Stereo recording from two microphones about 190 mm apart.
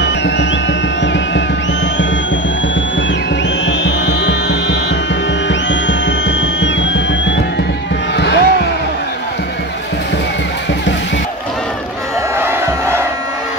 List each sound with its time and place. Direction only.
0.0 s music: 65° left (ahead or behind)
3.6 s music: 70° left (ahead or behind)
8.2 s a sound: 65° left (ahead or behind)
12.4 s crowd: 10° right (ahead or behind)